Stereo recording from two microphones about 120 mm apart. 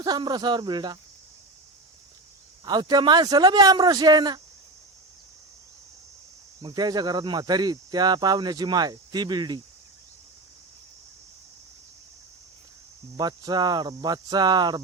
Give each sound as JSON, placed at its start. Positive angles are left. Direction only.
{"t": 0.0, "sound": "speech", "side_deg": -35}
{"t": 2.6, "sound": "speech", "side_deg": -35}
{"t": 6.6, "sound": "speech", "side_deg": -40}
{"t": 13.1, "sound": "speech", "side_deg": -35}